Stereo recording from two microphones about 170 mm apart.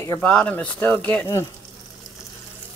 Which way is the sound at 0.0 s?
10° left (ahead or behind).